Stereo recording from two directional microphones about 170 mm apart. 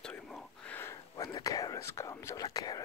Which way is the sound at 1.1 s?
20° left (ahead or behind).